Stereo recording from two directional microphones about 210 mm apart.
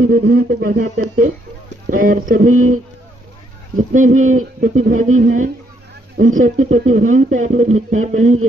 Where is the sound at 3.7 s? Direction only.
40° right (ahead or behind).